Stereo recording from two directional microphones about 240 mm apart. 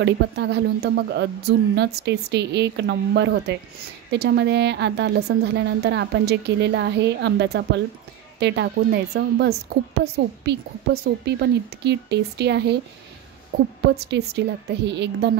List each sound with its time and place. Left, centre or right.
0.0 s a woman's voice: right